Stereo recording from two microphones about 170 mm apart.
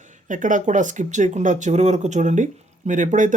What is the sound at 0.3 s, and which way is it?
Speech, 50° right (ahead or behind).